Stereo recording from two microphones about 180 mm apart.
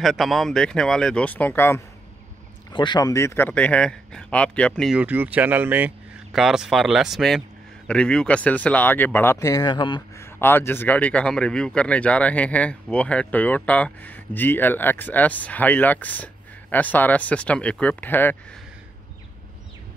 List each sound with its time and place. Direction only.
0.0 s speech: centre (ahead or behind)
2.7 s speech: 25° left (ahead or behind); by 4.9 s 5° left (ahead or behind)
4.9 s speech: 10° right (ahead or behind); by 10.2 s 25° left (ahead or behind)
10.4 s speech: 10° left (ahead or behind)